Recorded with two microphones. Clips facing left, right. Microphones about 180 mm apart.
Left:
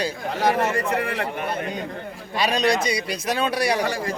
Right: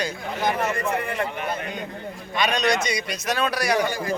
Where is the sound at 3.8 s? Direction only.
85° left.